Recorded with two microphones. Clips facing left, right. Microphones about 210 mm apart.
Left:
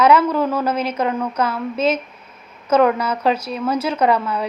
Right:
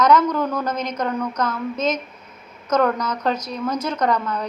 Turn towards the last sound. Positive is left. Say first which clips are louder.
# left 3 dB
turn(degrees=10)  # may be behind; listen again after turning